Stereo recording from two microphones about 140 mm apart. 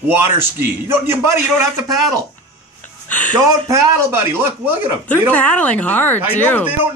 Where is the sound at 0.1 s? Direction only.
15° right (ahead or behind).